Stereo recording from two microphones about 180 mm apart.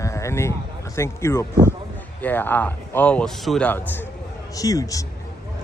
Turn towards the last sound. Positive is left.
turn(degrees=20)  # may be behind; listen again after turning